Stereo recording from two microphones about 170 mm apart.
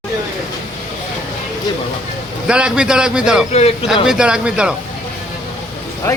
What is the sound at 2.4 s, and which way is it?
A man's voice, 5° right (ahead or behind).